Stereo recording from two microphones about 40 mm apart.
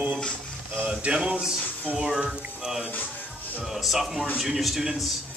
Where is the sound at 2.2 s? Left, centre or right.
Centre.